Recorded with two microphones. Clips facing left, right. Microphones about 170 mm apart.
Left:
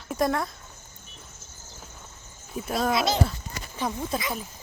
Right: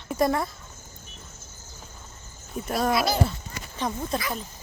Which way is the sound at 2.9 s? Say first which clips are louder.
Even; 20° left (ahead or behind).